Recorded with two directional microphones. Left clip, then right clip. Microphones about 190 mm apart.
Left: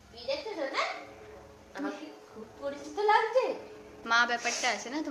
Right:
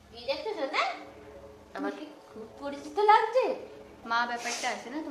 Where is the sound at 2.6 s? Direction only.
30° right (ahead or behind).